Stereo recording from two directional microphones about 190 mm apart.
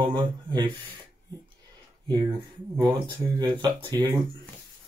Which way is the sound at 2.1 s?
20° right (ahead or behind).